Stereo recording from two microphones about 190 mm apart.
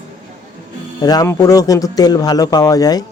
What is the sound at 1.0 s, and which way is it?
Speech, 20° left (ahead or behind).